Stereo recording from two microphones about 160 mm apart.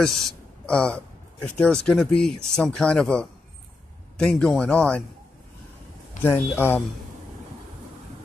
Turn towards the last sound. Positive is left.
turn(degrees=15)  # may be behind; listen again after turning